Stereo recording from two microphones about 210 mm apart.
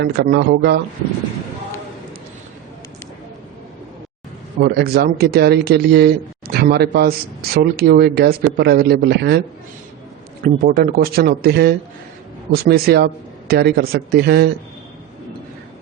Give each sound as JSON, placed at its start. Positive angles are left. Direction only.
{"t": 0.0, "sound": "a man's voice", "side_deg": -55}
{"t": 4.6, "sound": "a man's voice", "side_deg": -50}
{"t": 10.4, "sound": "a man's voice", "side_deg": -45}